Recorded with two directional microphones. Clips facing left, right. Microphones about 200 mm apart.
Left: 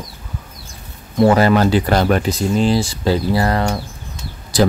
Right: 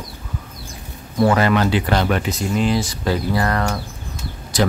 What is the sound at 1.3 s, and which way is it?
Speech, 35° left (ahead or behind).